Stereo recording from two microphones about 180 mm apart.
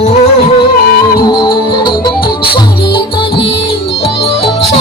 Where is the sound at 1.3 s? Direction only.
25° left (ahead or behind).